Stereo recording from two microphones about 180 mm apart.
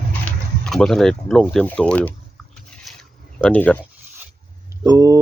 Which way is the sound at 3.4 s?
10° left (ahead or behind).